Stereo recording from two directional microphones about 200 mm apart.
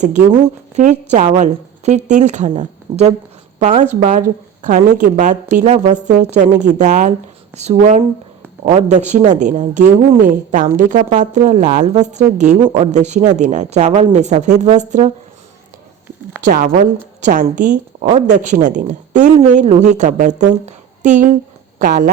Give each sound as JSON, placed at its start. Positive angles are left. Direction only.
{"t": 0.0, "sound": "a woman's voice", "side_deg": -35}
{"t": 16.5, "sound": "a woman's voice", "side_deg": -40}
{"t": 20.7, "sound": "a sound", "side_deg": -35}
{"t": 21.8, "sound": "speech", "side_deg": -45}